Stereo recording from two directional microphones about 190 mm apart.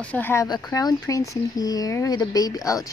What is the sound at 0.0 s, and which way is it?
Speech, 10° left (ahead or behind).